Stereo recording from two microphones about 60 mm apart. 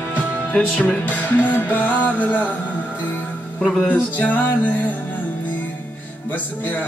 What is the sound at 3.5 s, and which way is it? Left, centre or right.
Speech, centre.